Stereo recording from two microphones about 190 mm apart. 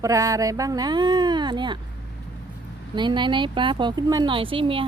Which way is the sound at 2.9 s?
25° right (ahead or behind).